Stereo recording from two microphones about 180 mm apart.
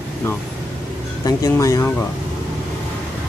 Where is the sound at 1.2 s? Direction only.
20° left (ahead or behind).